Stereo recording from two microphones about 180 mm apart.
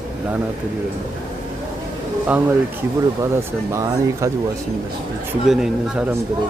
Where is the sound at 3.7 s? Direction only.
15° right (ahead or behind).